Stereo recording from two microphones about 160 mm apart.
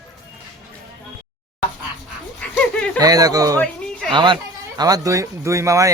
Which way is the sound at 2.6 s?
10° left (ahead or behind).